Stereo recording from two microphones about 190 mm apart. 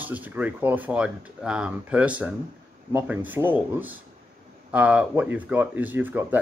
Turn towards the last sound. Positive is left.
turn(degrees=-10)  # may be behind; listen again after turning